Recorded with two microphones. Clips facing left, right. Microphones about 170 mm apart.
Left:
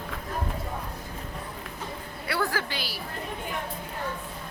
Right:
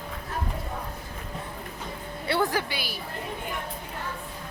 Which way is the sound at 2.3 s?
20° right (ahead or behind).